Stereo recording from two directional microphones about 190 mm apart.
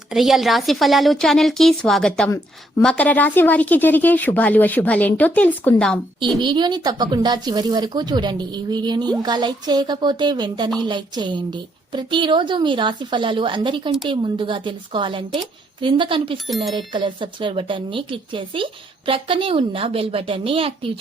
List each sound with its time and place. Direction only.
0.1 s a woman's voice: centre (ahead or behind)
6.4 s speech: 25° right (ahead or behind)